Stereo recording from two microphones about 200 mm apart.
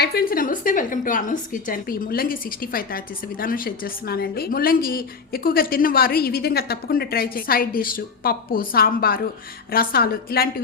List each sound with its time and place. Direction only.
0.0 s a woman's voice: 50° left (ahead or behind)